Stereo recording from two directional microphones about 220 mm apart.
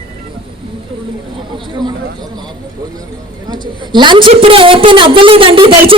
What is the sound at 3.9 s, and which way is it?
A woman's voice, 20° right (ahead or behind).